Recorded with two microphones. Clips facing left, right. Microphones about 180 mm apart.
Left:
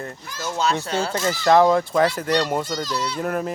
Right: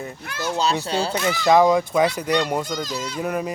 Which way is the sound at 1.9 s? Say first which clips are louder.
Even; 15° right (ahead or behind).